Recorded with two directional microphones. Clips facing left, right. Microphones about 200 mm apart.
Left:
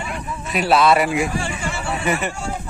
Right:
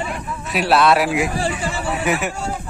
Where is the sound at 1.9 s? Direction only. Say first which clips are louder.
Right 1 dB; 5° right (ahead or behind).